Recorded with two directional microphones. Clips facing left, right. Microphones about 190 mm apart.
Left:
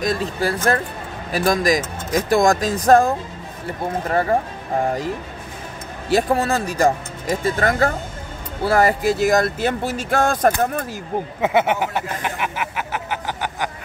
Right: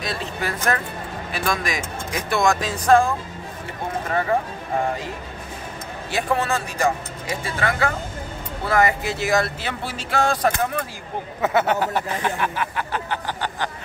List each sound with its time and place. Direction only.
0.0 s speech: 40° left (ahead or behind)
4.1 s speech: 40° left (ahead or behind)
6.0 s speech: 40° left (ahead or behind)
11.5 s speech: 15° left (ahead or behind)